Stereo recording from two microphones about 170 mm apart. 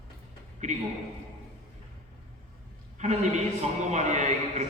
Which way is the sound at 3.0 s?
45° right (ahead or behind).